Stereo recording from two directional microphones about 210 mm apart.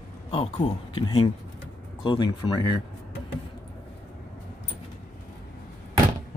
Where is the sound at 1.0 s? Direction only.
25° left (ahead or behind).